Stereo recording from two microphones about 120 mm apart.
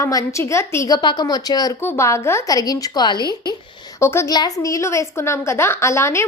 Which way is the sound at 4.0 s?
20° left (ahead or behind).